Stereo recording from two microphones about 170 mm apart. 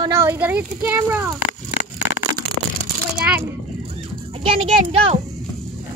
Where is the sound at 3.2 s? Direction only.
10° right (ahead or behind).